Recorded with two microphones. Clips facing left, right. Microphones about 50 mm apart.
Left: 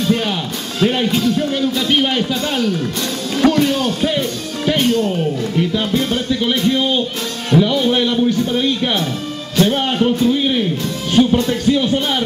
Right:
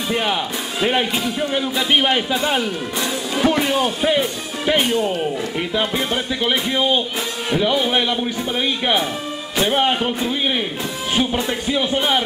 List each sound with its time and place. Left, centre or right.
0.0 s speech: centre